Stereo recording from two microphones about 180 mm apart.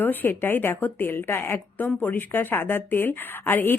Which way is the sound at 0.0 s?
10° left (ahead or behind).